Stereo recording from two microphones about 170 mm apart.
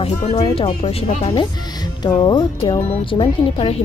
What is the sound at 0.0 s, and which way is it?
Speech, 35° left (ahead or behind).